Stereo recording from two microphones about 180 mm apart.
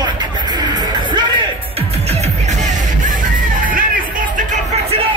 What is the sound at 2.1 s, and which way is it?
Music, 40° right (ahead or behind).